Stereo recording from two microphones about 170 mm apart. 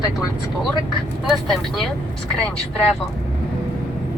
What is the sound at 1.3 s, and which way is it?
Speech, centre (ahead or behind).